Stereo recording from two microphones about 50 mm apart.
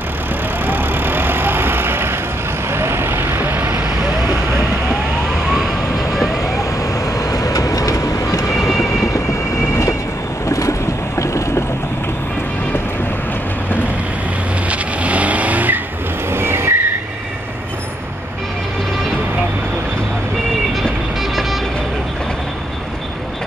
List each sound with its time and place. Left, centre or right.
0.7 s vehicle: right
8.3 s vehicle: left
10.4 s vehicle: left
14.7 s vehicle: right
16.3 s vehicle: right
21.2 s music: centre